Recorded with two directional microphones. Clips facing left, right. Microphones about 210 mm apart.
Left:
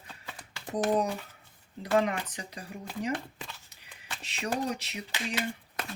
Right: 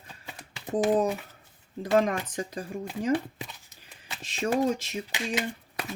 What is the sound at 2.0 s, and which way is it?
Speech, 45° right (ahead or behind).